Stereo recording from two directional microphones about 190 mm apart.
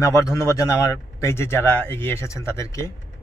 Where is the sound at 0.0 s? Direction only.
15° left (ahead or behind).